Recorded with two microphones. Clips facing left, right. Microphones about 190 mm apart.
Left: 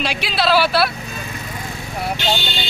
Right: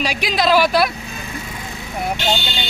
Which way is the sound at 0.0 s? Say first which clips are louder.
Right 1 dB; 15° right (ahead or behind).